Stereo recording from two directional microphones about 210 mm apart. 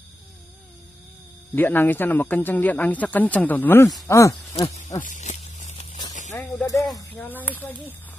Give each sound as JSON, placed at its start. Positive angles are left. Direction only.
{"t": 1.5, "sound": "speech", "side_deg": 10}
{"t": 4.6, "sound": "speech", "side_deg": 35}
{"t": 5.0, "sound": "a sound", "side_deg": 35}
{"t": 6.6, "sound": "speech", "side_deg": 15}